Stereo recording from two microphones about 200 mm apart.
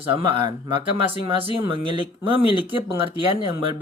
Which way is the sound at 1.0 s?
25° right (ahead or behind).